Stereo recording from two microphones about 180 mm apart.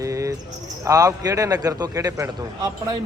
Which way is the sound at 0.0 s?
15° right (ahead or behind).